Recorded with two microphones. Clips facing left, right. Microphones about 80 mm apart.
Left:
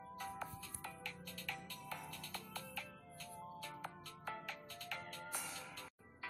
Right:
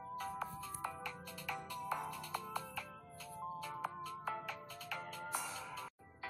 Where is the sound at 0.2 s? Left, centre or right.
Centre.